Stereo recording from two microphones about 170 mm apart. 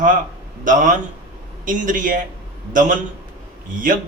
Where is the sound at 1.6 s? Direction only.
50° right (ahead or behind).